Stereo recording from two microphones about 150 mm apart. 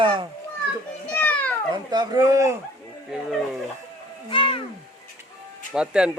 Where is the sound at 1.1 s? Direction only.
10° left (ahead or behind).